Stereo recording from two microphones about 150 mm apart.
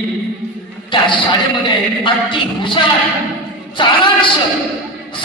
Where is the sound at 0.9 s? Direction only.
35° left (ahead or behind).